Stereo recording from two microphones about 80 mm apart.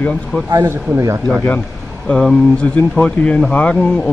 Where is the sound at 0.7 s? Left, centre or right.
Right.